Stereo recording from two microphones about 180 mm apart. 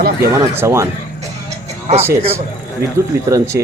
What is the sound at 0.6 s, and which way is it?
Speech, 15° right (ahead or behind).